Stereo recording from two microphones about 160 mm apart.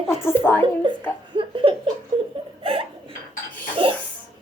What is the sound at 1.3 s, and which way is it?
Laughter, 30° right (ahead or behind).